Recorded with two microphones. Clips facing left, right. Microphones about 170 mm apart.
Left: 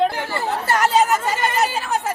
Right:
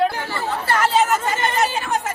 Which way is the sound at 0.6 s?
40° left (ahead or behind).